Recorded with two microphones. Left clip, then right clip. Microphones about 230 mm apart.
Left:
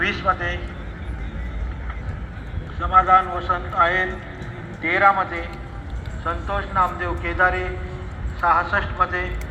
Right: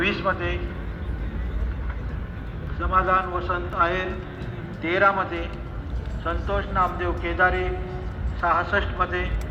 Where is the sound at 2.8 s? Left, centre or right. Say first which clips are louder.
Left 6 dB; right.